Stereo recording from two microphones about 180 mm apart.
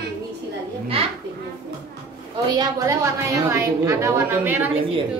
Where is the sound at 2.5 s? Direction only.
20° right (ahead or behind).